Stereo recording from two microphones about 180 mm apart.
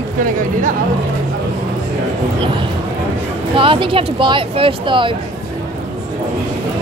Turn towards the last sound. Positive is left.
turn(degrees=-25)  # may be behind; listen again after turning